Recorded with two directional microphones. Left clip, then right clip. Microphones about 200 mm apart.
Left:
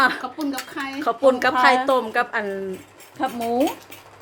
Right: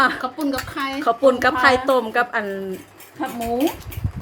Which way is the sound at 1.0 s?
Centre (ahead or behind).